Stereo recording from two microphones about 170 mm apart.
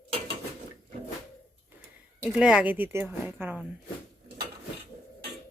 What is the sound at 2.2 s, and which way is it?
Speech, 5° right (ahead or behind).